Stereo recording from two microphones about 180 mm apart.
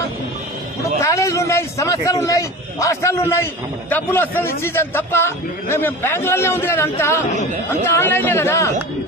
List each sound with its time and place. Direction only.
0.9 s a man's voice: 15° left (ahead or behind)